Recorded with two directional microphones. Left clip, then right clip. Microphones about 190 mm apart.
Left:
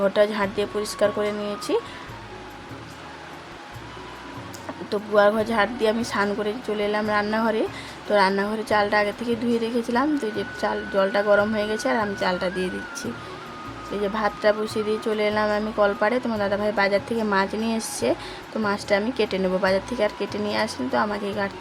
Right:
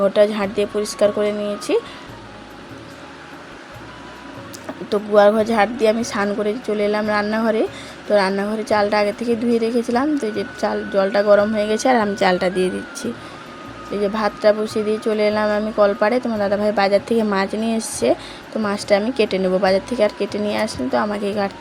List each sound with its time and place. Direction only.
0.0 s a woman's voice: 15° right (ahead or behind)
4.9 s a woman's voice: 15° right (ahead or behind)
11.7 s a woman's voice: 25° right (ahead or behind)